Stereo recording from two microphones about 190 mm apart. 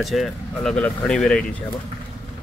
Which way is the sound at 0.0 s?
Centre (ahead or behind).